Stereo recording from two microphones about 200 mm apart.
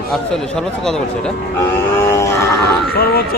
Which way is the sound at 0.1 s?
5° left (ahead or behind).